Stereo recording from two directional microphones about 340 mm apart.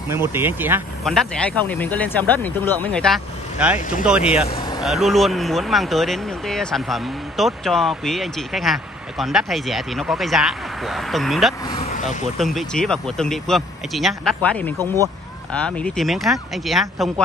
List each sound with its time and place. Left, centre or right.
0.1 s speech: centre
4.6 s vehicle: centre
4.8 s speech: centre
11.6 s speech: centre
12.4 s speech: centre